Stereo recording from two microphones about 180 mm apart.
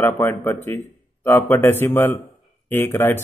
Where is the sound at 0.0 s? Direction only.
10° left (ahead or behind).